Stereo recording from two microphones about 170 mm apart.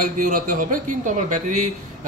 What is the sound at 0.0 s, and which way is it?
A man's voice, 55° right (ahead or behind).